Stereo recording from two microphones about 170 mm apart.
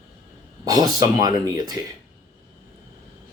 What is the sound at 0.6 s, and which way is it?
Speech, 20° right (ahead or behind).